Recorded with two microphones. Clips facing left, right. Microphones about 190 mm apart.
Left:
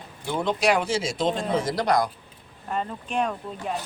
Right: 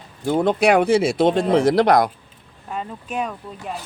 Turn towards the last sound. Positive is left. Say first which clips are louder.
# left 1 dB
turn(degrees=0)  # may be behind; listen again after turning